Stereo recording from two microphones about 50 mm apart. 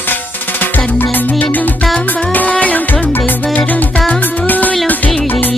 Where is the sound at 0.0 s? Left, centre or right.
Left.